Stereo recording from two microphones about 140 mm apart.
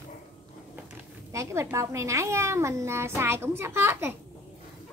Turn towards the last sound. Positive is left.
turn(degrees=-15)  # may be behind; listen again after turning